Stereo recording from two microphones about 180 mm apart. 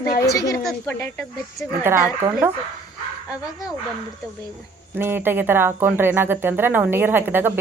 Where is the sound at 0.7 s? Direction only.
10° left (ahead or behind).